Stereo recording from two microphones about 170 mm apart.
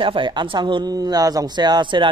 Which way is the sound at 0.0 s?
30° right (ahead or behind).